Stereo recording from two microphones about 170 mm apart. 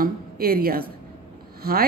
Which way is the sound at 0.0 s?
60° right (ahead or behind).